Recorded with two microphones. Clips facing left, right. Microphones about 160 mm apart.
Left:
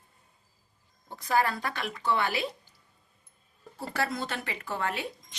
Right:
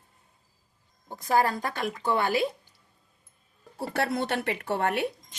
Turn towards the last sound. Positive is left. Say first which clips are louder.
# right 6 dB
turn(degrees=-60)  # may be behind; listen again after turning